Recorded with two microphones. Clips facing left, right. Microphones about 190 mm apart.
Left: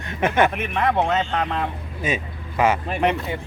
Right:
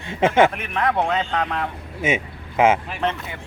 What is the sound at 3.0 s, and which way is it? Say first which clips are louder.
Speech: left 3 dB; 15° left (ahead or behind).